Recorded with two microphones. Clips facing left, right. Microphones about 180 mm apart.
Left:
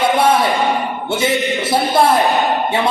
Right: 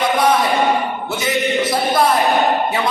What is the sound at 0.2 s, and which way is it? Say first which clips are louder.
Speech: left 1 dB; 25° left (ahead or behind).